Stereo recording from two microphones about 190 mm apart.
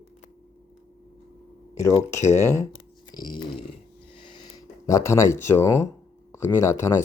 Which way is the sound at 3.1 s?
25° left (ahead or behind).